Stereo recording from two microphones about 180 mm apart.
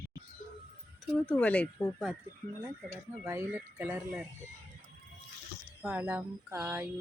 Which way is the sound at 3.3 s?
15° right (ahead or behind).